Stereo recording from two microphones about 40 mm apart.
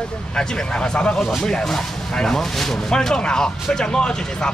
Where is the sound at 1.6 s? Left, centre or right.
Centre.